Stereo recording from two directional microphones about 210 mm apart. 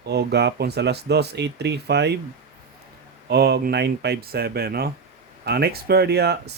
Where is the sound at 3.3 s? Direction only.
50° right (ahead or behind).